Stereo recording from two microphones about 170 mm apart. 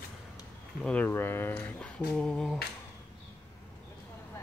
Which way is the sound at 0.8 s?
10° left (ahead or behind).